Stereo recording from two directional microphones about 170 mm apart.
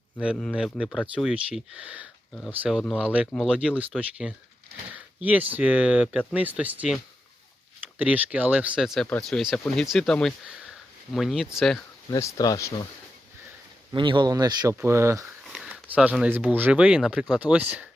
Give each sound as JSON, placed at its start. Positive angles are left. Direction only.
{"t": 0.5, "sound": "speech", "side_deg": -5}
{"t": 12.1, "sound": "speech", "side_deg": 20}
{"t": 13.9, "sound": "speech", "side_deg": -30}
{"t": 15.4, "sound": "speech", "side_deg": -5}